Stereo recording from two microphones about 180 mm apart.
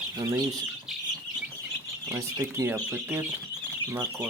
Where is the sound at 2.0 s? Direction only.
15° right (ahead or behind).